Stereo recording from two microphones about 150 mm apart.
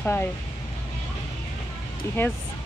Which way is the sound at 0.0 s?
15° left (ahead or behind).